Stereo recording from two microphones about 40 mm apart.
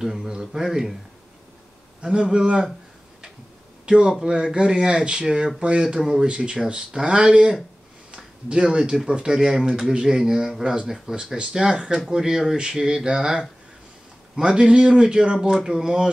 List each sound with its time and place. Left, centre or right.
0.0 s speech: centre
2.1 s a man's voice: right
4.2 s a man's voice: right
5.9 s speech: centre
6.2 s a man's voice: right